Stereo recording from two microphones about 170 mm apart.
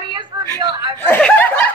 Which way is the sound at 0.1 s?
30° right (ahead or behind).